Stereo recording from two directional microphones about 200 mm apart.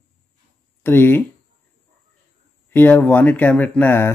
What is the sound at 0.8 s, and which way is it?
Speech, 10° left (ahead or behind).